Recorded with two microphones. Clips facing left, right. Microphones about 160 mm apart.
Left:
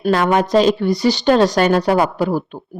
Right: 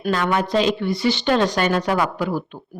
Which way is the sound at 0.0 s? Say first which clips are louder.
Left 5 dB; 40° left (ahead or behind).